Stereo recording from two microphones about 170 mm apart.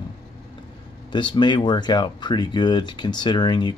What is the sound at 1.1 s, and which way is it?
Speech, 25° left (ahead or behind).